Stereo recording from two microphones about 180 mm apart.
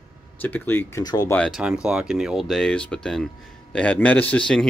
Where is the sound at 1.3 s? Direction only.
5° left (ahead or behind).